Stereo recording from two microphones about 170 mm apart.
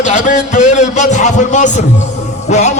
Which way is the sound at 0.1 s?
45° left (ahead or behind).